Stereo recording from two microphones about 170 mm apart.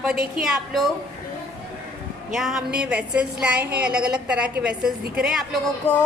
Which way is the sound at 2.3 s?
5° right (ahead or behind).